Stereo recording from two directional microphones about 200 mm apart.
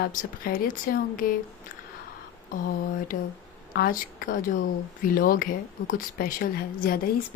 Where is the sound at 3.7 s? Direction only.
45° left (ahead or behind).